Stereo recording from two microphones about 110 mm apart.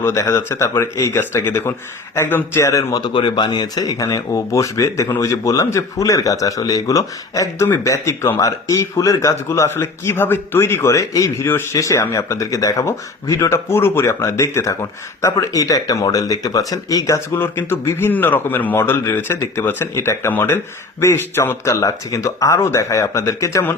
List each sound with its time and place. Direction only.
0.0 s a man's voice: 25° left (ahead or behind)
3.1 s a man's voice: 45° left (ahead or behind); by 23.6 s 30° left (ahead or behind)